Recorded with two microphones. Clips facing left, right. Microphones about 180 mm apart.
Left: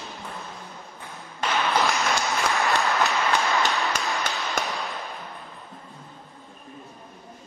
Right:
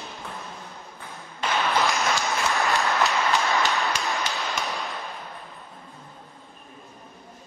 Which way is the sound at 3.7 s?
Centre (ahead or behind).